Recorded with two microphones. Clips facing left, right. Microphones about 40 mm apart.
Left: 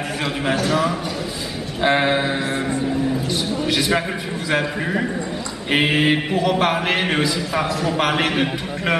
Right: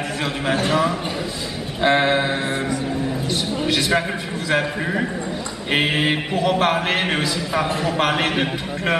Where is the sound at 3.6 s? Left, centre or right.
Centre.